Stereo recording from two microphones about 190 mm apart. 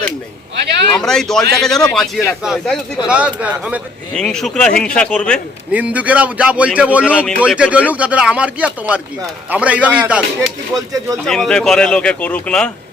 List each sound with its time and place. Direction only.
0.9 s speech: centre (ahead or behind)
4.1 s speech: 5° left (ahead or behind)
5.7 s speech: 10° right (ahead or behind)
7.2 s a man's voice: 10° left (ahead or behind)
7.4 s speech: 5° right (ahead or behind)
10.8 s speech: 15° right (ahead or behind)
11.3 s speech: 5° left (ahead or behind)